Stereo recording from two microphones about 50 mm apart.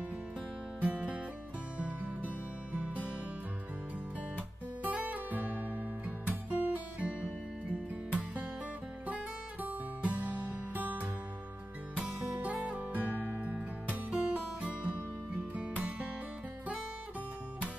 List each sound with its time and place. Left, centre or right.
0.7 s music: right
4.8 s guitar: right
9.0 s music: right